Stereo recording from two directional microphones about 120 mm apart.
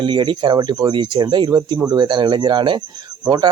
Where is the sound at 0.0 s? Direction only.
40° right (ahead or behind).